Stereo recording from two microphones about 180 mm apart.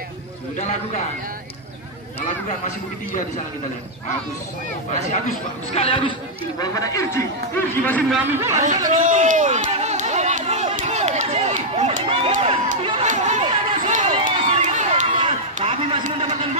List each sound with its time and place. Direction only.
0.6 s a man's voice: 40° left (ahead or behind)
4.9 s a man's voice: 40° left (ahead or behind)
5.8 s a man's voice: 30° left (ahead or behind)
6.6 s a man's voice: 20° left (ahead or behind)
8.3 s speech: 15° right (ahead or behind)
9.0 s run: 45° right (ahead or behind)
15.1 s a sound: 30° right (ahead or behind)